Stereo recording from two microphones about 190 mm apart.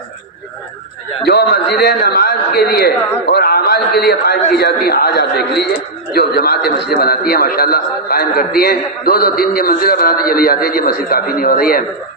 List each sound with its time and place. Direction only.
1.3 s a man's voice: 60° left (ahead or behind)